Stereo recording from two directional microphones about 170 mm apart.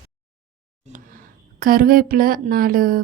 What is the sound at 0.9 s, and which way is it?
A woman's voice, 55° right (ahead or behind).